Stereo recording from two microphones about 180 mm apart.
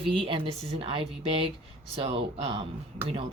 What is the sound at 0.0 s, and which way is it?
Speech, 30° right (ahead or behind).